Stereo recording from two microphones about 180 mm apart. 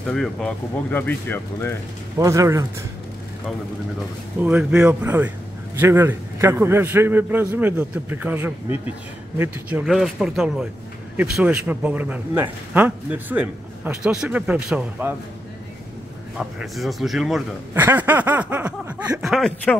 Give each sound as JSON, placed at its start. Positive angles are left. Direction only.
{"t": 0.0, "sound": "speech", "side_deg": 0}
{"t": 2.1, "sound": "speech", "side_deg": -15}
{"t": 4.4, "sound": "speech", "side_deg": -10}
{"t": 16.3, "sound": "speech", "side_deg": 0}